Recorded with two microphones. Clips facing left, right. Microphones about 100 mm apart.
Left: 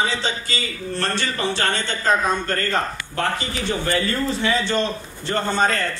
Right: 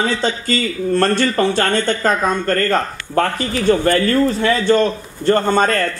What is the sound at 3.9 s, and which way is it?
A man's voice, 55° right (ahead or behind).